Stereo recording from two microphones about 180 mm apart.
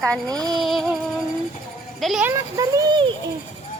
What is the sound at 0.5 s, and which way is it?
Speech, centre (ahead or behind).